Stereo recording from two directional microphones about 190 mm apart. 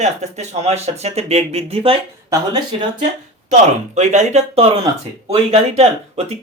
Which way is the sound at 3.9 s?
35° right (ahead or behind).